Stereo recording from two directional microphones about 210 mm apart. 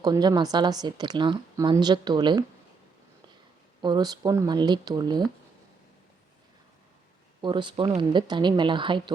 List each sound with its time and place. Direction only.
0.0 s a woman's voice: 20° right (ahead or behind)
3.8 s a woman's voice: 20° right (ahead or behind)
7.4 s a woman's voice: 20° right (ahead or behind)